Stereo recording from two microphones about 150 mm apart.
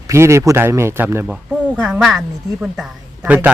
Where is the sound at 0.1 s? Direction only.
20° right (ahead or behind).